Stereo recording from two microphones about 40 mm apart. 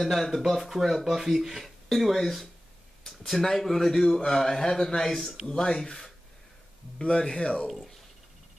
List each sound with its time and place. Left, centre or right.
0.0 s speech: centre; by 7.6 s left
7.6 s speech: centre